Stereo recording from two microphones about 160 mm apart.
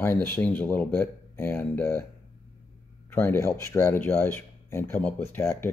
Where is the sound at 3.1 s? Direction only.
15° left (ahead or behind).